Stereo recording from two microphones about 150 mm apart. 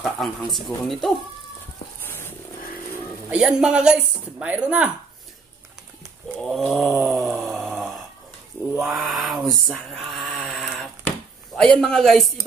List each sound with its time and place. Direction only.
0.0 s speech: centre (ahead or behind)
2.0 s wild animals: 15° left (ahead or behind)
3.3 s speech: 5° right (ahead or behind)
6.5 s speech: centre (ahead or behind)
7.2 s wail: centre (ahead or behind)
8.7 s a sound: 5° right (ahead or behind)